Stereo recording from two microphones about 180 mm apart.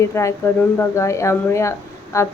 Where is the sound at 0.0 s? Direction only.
15° left (ahead or behind).